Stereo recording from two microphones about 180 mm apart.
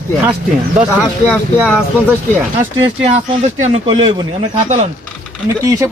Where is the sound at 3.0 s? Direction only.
30° right (ahead or behind).